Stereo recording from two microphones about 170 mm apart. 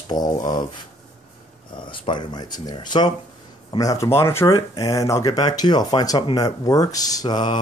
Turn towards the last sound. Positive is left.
turn(degrees=25)  # may be behind; listen again after turning